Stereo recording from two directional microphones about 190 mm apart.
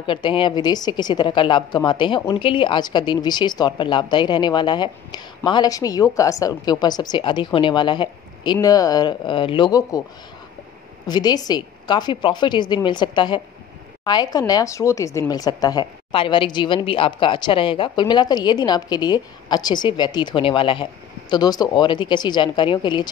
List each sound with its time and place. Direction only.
0.0 s a woman's voice: 25° left (ahead or behind)
11.1 s a woman's voice: 20° left (ahead or behind)